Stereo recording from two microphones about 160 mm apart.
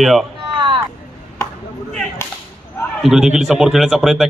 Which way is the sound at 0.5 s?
30° right (ahead or behind).